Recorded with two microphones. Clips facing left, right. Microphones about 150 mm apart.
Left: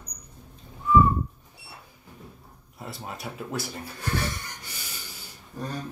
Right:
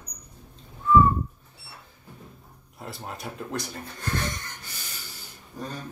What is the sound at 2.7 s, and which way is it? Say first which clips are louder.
Speech: even; centre (ahead or behind).